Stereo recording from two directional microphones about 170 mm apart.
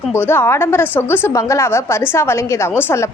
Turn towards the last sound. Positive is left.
turn(degrees=15)  # may be behind; listen again after turning